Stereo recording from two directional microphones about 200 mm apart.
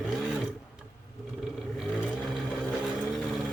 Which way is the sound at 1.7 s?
Centre (ahead or behind).